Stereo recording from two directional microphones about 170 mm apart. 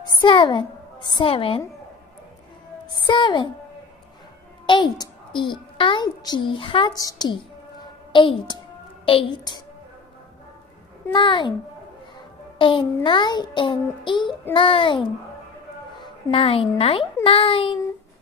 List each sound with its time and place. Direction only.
0.2 s a child's voice: 30° left (ahead or behind)
3.1 s a child's voice: 25° left (ahead or behind)
4.6 s a child's voice: 25° left (ahead or behind)
11.1 s a child's voice: 30° left (ahead or behind)
12.5 s a child's voice: 30° left (ahead or behind)